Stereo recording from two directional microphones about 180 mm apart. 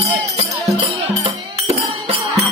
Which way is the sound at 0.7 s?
25° right (ahead or behind).